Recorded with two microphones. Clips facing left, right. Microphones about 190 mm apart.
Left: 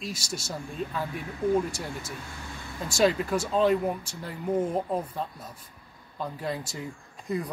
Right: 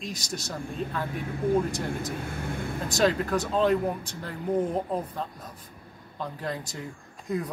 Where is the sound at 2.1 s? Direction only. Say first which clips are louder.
Right 8 dB; 55° right (ahead or behind).